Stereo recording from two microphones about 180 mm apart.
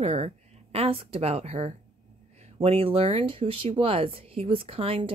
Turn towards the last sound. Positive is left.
turn(degrees=-30)  # may be behind; listen again after turning